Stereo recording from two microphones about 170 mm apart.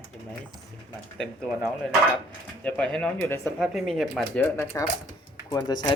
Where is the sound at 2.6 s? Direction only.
5° left (ahead or behind).